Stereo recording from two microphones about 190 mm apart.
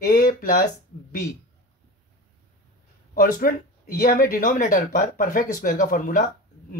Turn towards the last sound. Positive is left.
turn(degrees=45)  # may be behind; listen again after turning